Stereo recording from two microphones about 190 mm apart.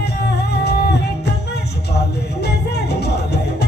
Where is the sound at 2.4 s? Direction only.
60° left (ahead or behind).